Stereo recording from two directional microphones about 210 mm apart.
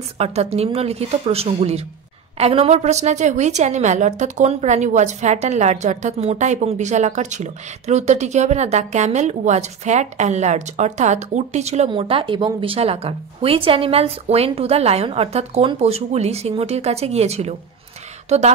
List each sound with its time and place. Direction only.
0.2 s a woman's voice: 30° right (ahead or behind)